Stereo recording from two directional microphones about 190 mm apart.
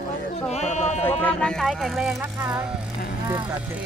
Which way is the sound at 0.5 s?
35° left (ahead or behind).